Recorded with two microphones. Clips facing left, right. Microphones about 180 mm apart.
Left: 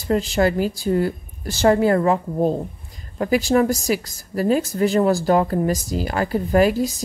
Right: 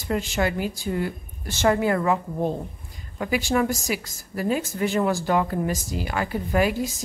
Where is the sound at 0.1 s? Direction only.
35° left (ahead or behind).